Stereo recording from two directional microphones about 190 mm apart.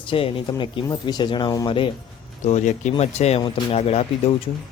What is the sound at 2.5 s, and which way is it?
Speech, 40° left (ahead or behind).